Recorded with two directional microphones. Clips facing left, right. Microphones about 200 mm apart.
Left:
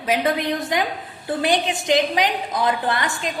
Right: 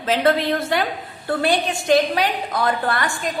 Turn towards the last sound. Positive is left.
turn(degrees=20)  # may be behind; listen again after turning